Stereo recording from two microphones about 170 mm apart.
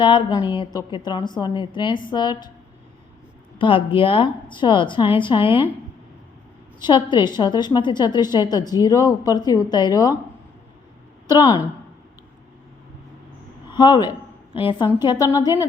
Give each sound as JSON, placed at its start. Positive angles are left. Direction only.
{"t": 0.0, "sound": "a woman's voice", "side_deg": 30}
{"t": 3.6, "sound": "speech", "side_deg": 30}
{"t": 6.8, "sound": "speech", "side_deg": 25}
{"t": 11.3, "sound": "speech", "side_deg": 20}
{"t": 13.7, "sound": "speech", "side_deg": 25}